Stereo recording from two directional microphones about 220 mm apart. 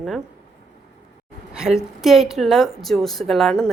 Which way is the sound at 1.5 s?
5° right (ahead or behind).